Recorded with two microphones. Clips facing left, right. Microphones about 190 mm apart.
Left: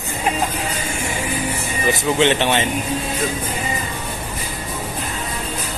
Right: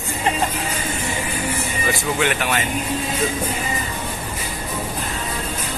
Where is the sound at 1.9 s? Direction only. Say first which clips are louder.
Left 5 dB; 25° left (ahead or behind).